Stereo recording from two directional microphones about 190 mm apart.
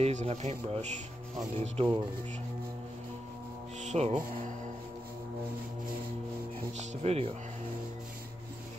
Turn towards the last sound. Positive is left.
turn(degrees=-35)  # may be behind; listen again after turning